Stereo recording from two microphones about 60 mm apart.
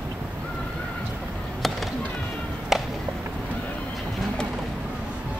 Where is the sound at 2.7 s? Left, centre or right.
Centre.